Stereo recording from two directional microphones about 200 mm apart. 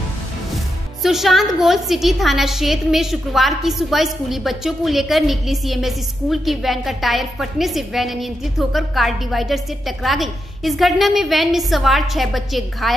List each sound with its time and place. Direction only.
1.0 s a woman's voice: centre (ahead or behind)